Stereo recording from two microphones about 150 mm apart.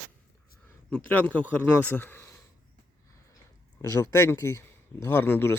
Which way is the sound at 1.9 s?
15° left (ahead or behind).